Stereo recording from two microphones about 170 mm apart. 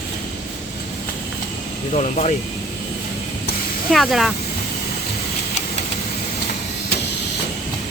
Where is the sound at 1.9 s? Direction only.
40° left (ahead or behind).